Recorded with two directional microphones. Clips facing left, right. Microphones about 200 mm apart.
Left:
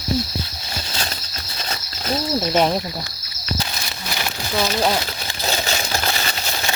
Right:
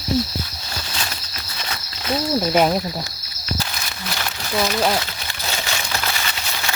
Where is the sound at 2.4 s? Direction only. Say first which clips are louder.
Right 1 dB; 5° right (ahead or behind).